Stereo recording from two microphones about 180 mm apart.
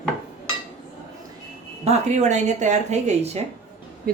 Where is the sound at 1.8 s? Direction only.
40° right (ahead or behind).